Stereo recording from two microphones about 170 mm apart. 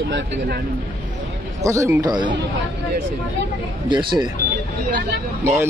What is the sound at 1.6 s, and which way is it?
Speech, 20° right (ahead or behind).